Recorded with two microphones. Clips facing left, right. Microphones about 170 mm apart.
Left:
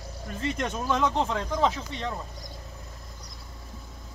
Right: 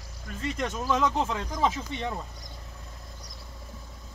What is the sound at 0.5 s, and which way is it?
Speech, centre (ahead or behind).